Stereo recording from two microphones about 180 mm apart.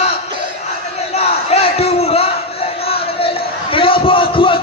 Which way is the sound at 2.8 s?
30° left (ahead or behind).